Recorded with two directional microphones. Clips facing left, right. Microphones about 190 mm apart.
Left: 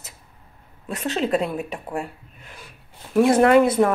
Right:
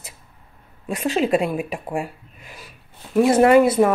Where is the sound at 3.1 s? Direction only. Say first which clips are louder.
Right 1 dB; 5° right (ahead or behind).